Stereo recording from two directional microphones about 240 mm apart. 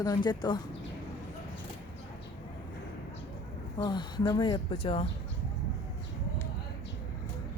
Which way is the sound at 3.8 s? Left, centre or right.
Centre.